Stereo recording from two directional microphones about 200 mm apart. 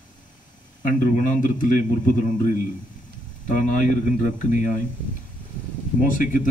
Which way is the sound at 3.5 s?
40° left (ahead or behind).